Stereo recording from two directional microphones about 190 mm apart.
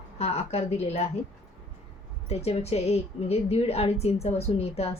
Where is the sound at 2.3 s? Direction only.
35° left (ahead or behind).